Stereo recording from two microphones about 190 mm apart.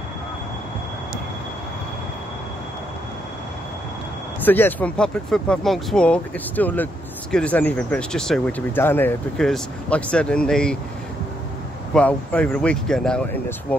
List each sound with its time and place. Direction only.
4.5 s speech: 10° left (ahead or behind)
11.9 s speech: 5° left (ahead or behind)